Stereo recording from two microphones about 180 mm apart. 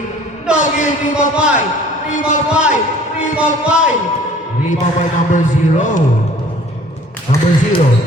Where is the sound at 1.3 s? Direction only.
5° right (ahead or behind).